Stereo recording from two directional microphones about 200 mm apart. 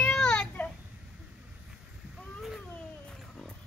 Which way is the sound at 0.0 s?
5° left (ahead or behind).